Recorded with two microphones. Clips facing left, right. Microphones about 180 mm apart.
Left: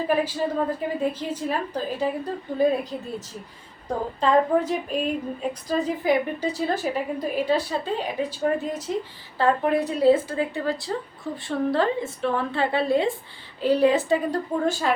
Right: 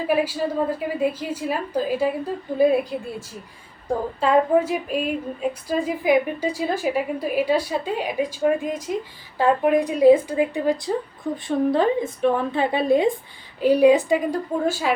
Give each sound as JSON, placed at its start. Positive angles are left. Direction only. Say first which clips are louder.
{"t": 0.1, "sound": "speech", "louder": "right 3 dB", "side_deg": -10}